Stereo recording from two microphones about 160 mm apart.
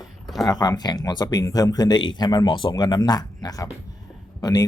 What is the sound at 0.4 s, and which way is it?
Speech, 25° left (ahead or behind).